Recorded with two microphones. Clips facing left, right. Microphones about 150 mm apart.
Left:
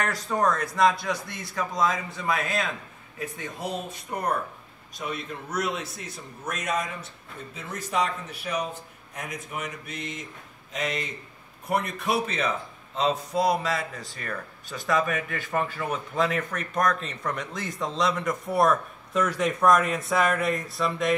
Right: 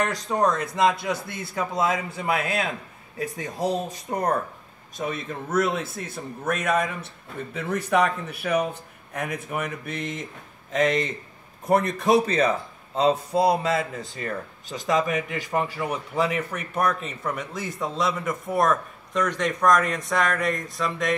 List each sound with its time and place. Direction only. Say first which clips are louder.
0.1 s a man's voice: right 2 dB; 20° right (ahead or behind); by 12.4 s 40° right (ahead or behind)
13.0 s a man's voice: right 4 dB; 30° right (ahead or behind); by 21.1 s centre (ahead or behind)